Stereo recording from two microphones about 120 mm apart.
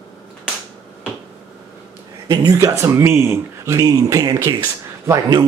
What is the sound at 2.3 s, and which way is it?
Speech, 30° right (ahead or behind).